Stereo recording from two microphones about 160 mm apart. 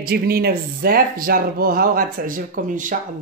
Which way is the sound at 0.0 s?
70° right (ahead or behind).